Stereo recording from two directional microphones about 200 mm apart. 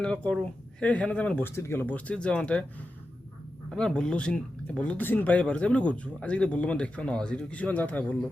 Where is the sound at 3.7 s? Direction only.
5° left (ahead or behind).